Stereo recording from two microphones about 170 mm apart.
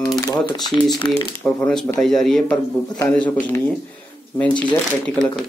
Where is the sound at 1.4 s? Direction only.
5° left (ahead or behind).